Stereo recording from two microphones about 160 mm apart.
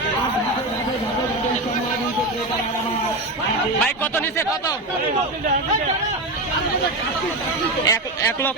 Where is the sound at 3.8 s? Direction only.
10° left (ahead or behind).